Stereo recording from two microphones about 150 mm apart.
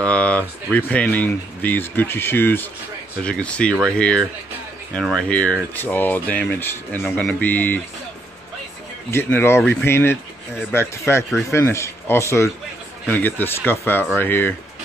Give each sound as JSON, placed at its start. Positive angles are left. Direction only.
{"t": 0.0, "sound": "speech", "side_deg": 10}
{"t": 9.1, "sound": "speech", "side_deg": 15}